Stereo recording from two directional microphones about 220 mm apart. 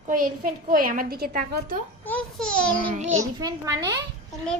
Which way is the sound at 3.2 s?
15° right (ahead or behind).